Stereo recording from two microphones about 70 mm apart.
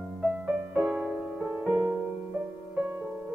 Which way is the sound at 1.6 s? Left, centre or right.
Centre.